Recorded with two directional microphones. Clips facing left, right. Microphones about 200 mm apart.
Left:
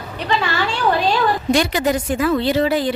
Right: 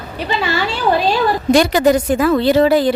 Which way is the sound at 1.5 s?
40° right (ahead or behind).